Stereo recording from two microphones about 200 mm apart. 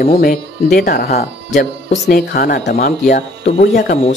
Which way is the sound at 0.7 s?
50° left (ahead or behind).